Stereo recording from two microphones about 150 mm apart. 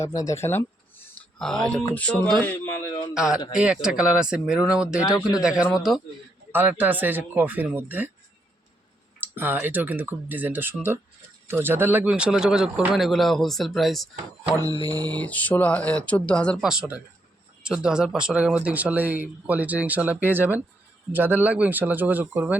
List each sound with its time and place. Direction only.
0.0 s speech: 20° left (ahead or behind)
1.2 s speech: 5° left (ahead or behind)
3.2 s speech: 5° right (ahead or behind)
9.2 s speech: 15° right (ahead or behind)
14.8 s mantra: 25° right (ahead or behind)
15.2 s speech: 10° left (ahead or behind)
16.6 s speech: 5° right (ahead or behind)